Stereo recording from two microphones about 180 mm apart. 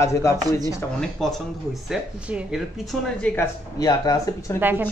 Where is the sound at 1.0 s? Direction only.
Centre (ahead or behind).